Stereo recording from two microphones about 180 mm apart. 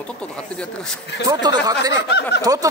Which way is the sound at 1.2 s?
25° right (ahead or behind).